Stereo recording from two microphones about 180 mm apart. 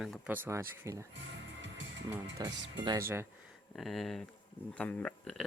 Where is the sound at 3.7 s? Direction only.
Centre (ahead or behind).